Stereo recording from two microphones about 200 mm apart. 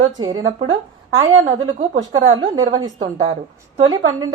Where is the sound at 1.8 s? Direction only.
25° right (ahead or behind).